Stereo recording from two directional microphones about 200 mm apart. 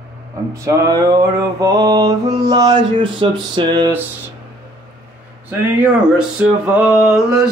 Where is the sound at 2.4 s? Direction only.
20° right (ahead or behind).